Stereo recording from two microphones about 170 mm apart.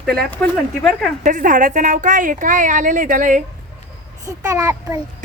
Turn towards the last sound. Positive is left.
turn(degrees=-20)  # may be behind; listen again after turning